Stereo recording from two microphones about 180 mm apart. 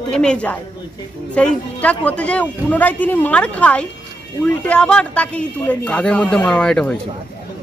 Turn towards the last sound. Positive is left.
turn(degrees=5)  # may be behind; listen again after turning